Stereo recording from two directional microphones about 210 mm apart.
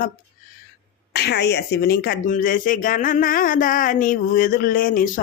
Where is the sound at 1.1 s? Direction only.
50° left (ahead or behind).